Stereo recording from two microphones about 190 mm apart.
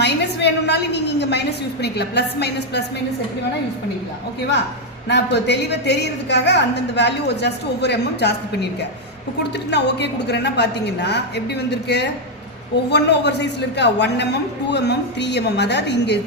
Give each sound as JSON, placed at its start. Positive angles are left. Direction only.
{"t": 0.0, "sound": "a woman's voice", "side_deg": 65}
{"t": 5.0, "sound": "a woman's voice", "side_deg": 65}